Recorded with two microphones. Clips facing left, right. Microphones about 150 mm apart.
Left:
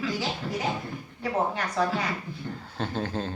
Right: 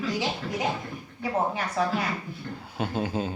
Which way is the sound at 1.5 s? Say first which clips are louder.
Even; 5° right (ahead or behind).